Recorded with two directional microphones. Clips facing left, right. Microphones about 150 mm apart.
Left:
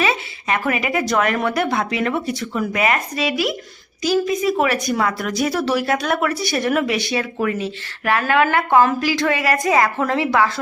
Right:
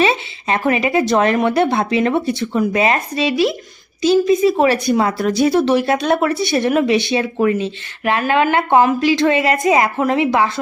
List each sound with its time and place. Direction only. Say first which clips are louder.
0.0 s speech: right 4 dB; 30° right (ahead or behind)